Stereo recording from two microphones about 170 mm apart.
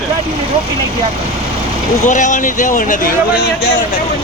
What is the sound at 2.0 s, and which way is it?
Speech, 50° left (ahead or behind).